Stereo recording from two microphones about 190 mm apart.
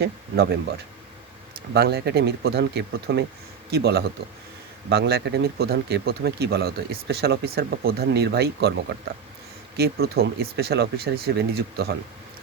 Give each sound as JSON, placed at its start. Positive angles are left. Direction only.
{"t": 0.0, "sound": "speech", "side_deg": -60}
{"t": 1.7, "sound": "speech", "side_deg": -60}